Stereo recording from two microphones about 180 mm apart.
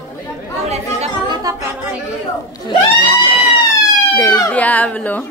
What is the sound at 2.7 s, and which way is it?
Speech, 25° left (ahead or behind).